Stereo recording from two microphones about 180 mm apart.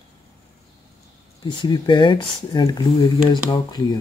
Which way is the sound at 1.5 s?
25° left (ahead or behind).